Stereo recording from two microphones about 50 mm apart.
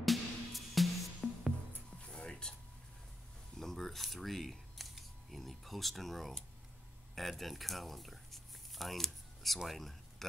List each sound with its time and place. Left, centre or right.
0.0 s music: centre
2.0 s music: centre
3.5 s camera: centre
7.2 s speech: centre